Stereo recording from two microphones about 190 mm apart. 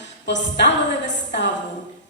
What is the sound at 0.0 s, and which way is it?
A woman's voice, 70° left (ahead or behind).